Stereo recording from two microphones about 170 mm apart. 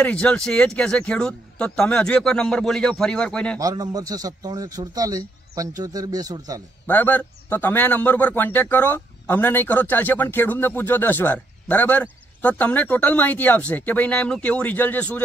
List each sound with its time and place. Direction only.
0.0 s speech: 5° left (ahead or behind)
3.5 s a man's voice: 20° right (ahead or behind)
6.9 s a man's voice: 10° left (ahead or behind)